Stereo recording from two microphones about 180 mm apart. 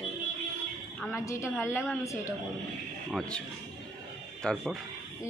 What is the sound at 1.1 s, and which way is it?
Female singing, 15° left (ahead or behind).